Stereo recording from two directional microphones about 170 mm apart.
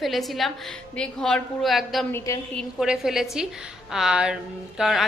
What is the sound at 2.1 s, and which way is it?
Speech, 20° left (ahead or behind).